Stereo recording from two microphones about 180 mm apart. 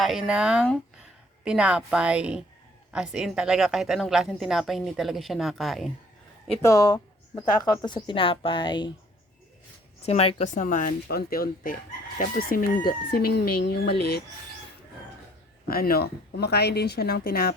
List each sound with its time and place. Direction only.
0.0 s a woman's voice: centre (ahead or behind)
6.6 s speech: 15° left (ahead or behind)
10.1 s speech: 35° left (ahead or behind); by 13.9 s 60° left (ahead or behind)
15.7 s speech: 55° left (ahead or behind)